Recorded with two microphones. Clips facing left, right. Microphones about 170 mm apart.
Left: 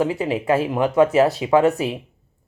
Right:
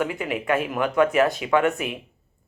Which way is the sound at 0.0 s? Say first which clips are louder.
Left 5 dB; 30° left (ahead or behind).